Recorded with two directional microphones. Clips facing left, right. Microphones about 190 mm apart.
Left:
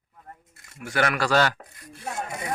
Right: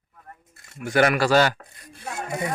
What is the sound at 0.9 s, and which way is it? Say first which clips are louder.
Speech: right 5 dB; 15° right (ahead or behind).